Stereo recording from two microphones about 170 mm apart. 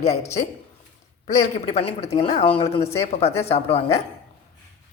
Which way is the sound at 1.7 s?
40° left (ahead or behind).